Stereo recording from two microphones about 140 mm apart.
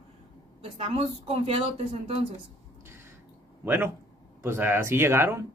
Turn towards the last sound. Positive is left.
turn(degrees=-20)  # may be behind; listen again after turning